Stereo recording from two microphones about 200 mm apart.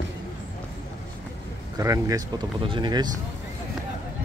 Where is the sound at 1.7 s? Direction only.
15° right (ahead or behind).